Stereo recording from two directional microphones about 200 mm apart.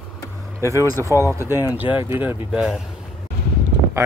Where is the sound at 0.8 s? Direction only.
15° right (ahead or behind).